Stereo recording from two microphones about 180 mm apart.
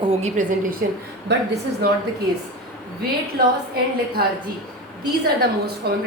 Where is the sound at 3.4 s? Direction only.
55° right (ahead or behind).